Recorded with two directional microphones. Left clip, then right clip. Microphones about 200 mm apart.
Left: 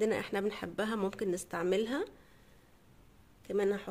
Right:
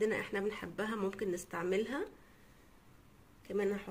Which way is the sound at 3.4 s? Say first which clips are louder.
Left 4 dB; 60° left (ahead or behind).